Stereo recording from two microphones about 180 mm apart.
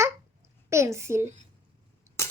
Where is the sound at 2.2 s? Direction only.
15° left (ahead or behind).